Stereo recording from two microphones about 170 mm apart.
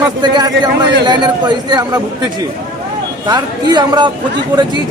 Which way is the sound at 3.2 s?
25° right (ahead or behind).